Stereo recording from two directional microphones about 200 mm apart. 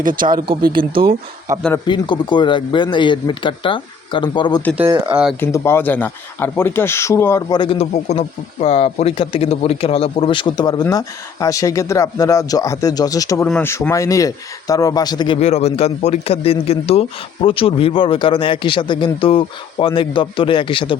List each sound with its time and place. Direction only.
0.0 s speech: 45° right (ahead or behind)
0.3 s speech: 25° right (ahead or behind)
0.6 s speech: 45° right (ahead or behind)
1.9 s speech: 25° left (ahead or behind)
4.9 s speech: 20° right (ahead or behind)
5.4 s speech: 15° left (ahead or behind)
15.4 s speech: 35° left (ahead or behind)